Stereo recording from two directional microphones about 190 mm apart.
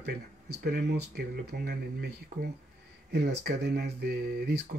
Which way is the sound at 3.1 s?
60° right (ahead or behind).